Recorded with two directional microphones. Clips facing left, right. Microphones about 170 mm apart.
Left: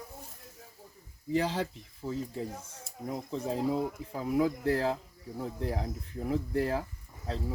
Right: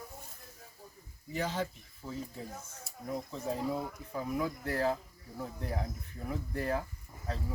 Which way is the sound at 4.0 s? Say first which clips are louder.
Left 6 dB; 90° left.